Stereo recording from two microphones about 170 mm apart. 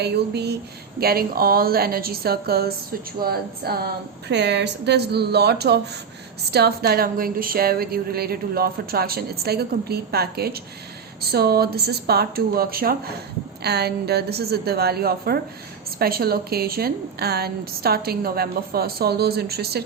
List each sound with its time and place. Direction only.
0.0 s a woman's voice: 75° right (ahead or behind)
4.3 s a woman's voice: 85° right; by 13.0 s 60° right (ahead or behind)
13.6 s a woman's voice: 70° right (ahead or behind)